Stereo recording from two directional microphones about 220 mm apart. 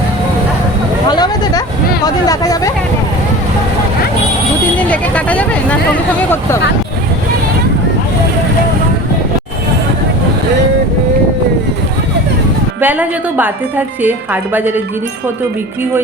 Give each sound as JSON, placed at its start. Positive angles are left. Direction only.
{"t": 1.1, "sound": "a sound", "side_deg": 20}
{"t": 4.8, "sound": "vehicle", "side_deg": 5}
{"t": 12.8, "sound": "speech", "side_deg": -10}